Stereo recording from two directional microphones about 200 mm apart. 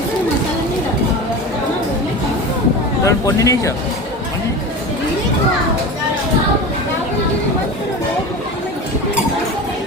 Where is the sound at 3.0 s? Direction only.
15° left (ahead or behind).